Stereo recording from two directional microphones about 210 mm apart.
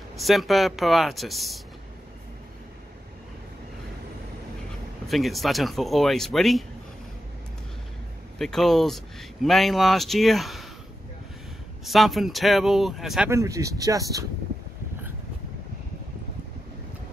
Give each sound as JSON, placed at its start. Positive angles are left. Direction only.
{"t": 0.2, "sound": "speech", "side_deg": 0}
{"t": 5.0, "sound": "speech", "side_deg": 0}
{"t": 8.4, "sound": "speech", "side_deg": 0}
{"t": 11.8, "sound": "speech", "side_deg": 0}
{"t": 13.3, "sound": "speech", "side_deg": -15}